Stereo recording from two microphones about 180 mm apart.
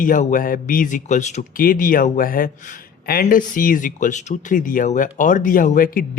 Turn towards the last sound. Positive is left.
turn(degrees=50)  # may be behind; listen again after turning